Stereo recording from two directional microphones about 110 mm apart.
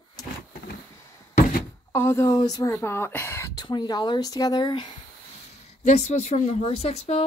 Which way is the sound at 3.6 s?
40° left (ahead or behind).